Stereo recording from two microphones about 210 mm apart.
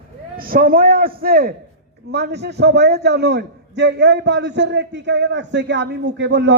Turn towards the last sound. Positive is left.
turn(degrees=-55)  # may be behind; listen again after turning